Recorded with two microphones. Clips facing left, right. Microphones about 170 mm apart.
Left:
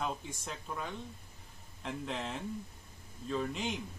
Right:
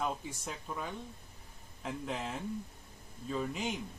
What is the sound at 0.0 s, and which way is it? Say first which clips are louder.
Speech: right 1 dB; 5° right (ahead or behind).